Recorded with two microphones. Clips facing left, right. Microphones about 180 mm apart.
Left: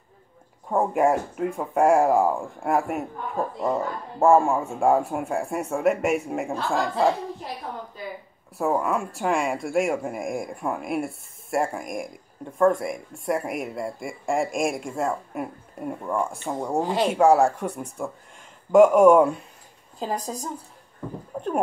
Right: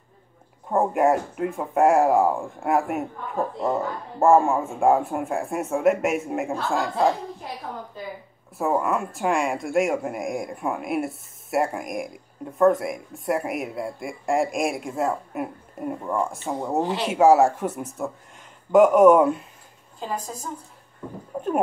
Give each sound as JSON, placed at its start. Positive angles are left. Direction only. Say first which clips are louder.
{"t": 0.7, "sound": "speech", "louder": "right 1 dB", "side_deg": 0}
{"t": 4.2, "sound": "speech", "louder": "right 1 dB", "side_deg": 0}
{"t": 8.5, "sound": "speech", "louder": "right 1 dB", "side_deg": 0}
{"t": 20.0, "sound": "a woman's voice", "louder": "left 2 dB", "side_deg": 35}
{"t": 21.3, "sound": "a sound", "louder": "right 1 dB", "side_deg": -5}